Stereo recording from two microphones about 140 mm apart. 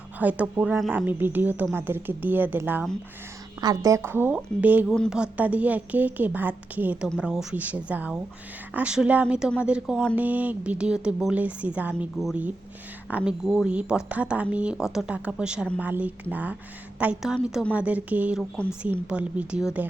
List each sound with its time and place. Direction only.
0.2 s a woman's voice: 10° right (ahead or behind)
3.6 s a woman's voice: 25° right (ahead or behind); by 19.9 s 10° right (ahead or behind)